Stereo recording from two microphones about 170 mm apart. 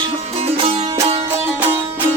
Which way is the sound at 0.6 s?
35° right (ahead or behind).